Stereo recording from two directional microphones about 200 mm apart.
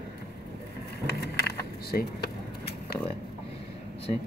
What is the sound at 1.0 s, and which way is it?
Vehicle, 55° left (ahead or behind).